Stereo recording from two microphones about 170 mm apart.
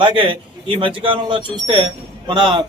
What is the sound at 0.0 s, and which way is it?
Speech, 30° right (ahead or behind).